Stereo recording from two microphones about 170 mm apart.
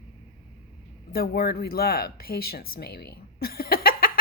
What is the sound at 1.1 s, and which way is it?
Speech, 65° left (ahead or behind).